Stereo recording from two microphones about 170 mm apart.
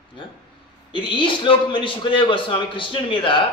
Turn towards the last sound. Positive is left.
turn(degrees=30)  # may be behind; listen again after turning